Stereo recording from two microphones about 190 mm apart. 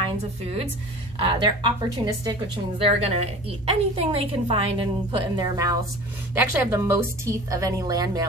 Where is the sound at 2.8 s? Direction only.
30° right (ahead or behind).